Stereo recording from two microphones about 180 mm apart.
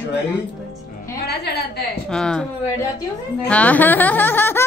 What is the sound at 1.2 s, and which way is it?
Speech, 65° left (ahead or behind).